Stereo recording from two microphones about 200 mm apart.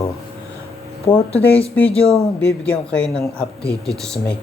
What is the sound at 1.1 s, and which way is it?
Speech, 15° left (ahead or behind).